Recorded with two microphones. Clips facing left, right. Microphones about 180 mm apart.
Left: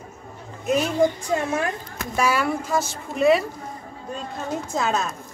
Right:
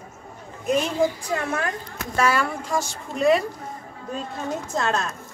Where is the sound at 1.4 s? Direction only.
20° left (ahead or behind); by 3.4 s centre (ahead or behind).